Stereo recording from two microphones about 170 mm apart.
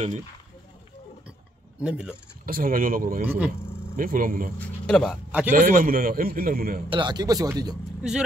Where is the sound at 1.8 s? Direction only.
5° right (ahead or behind).